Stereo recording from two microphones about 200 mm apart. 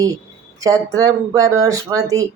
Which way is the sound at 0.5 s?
15° right (ahead or behind).